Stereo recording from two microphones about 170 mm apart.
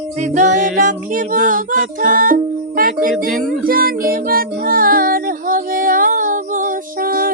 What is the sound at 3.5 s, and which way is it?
Music, 60° right (ahead or behind).